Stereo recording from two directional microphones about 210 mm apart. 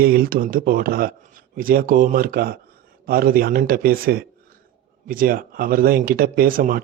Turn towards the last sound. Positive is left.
turn(degrees=-40)  # may be behind; listen again after turning